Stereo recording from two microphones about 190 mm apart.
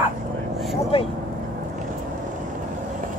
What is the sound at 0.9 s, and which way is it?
Vehicle, 30° left (ahead or behind).